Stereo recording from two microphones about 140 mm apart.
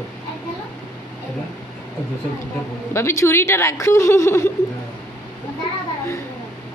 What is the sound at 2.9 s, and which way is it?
A man's voice, 20° left (ahead or behind).